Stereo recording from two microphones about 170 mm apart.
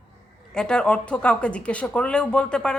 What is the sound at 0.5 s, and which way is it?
Speech, 5° left (ahead or behind).